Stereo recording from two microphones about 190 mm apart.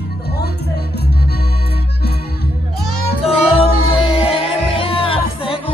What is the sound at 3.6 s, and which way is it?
Music, 30° left (ahead or behind).